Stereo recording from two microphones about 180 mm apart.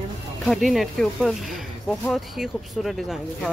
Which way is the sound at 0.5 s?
Centre (ahead or behind).